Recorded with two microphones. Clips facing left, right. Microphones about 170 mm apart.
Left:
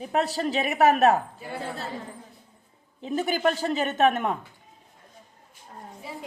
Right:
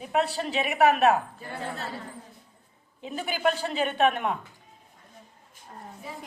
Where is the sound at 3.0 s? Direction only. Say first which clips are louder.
Left 3 dB; 40° left (ahead or behind).